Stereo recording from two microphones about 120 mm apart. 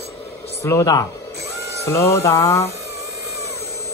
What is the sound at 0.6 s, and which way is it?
Speech, 25° left (ahead or behind).